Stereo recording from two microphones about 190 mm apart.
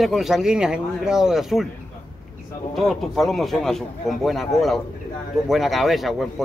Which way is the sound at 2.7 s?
Centre (ahead or behind).